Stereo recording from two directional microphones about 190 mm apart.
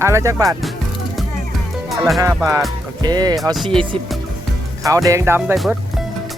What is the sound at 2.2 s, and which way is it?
Speech, 15° right (ahead or behind).